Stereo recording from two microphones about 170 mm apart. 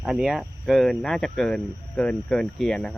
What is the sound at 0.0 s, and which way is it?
Speech, centre (ahead or behind).